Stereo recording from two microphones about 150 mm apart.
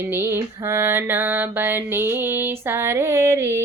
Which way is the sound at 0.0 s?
15° right (ahead or behind).